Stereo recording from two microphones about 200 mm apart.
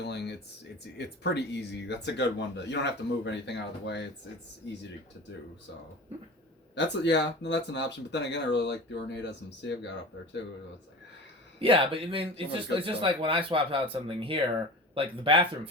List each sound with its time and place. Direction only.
0.0 s a sound: 55° left (ahead or behind)
0.9 s speech: 55° left (ahead or behind)
6.7 s speech: 60° left (ahead or behind)
11.6 s speech: 25° right (ahead or behind)